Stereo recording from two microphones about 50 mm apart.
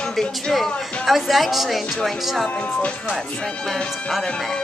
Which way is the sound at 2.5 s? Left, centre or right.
Left.